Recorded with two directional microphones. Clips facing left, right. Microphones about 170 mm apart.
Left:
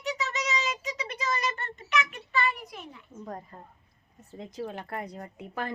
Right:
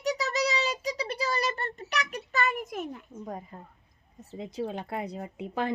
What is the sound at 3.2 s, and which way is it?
A woman's voice, 10° right (ahead or behind).